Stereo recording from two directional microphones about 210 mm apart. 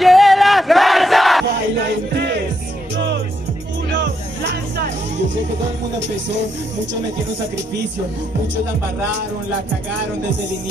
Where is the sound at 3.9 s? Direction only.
55° right (ahead or behind).